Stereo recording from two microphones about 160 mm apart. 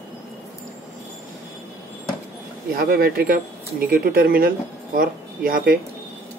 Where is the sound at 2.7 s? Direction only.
70° right (ahead or behind).